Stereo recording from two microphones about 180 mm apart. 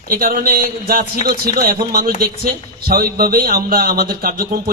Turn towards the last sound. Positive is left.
turn(degrees=-55)  # may be behind; listen again after turning